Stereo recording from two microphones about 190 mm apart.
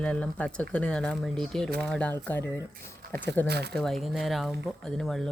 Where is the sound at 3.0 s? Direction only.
60° right (ahead or behind).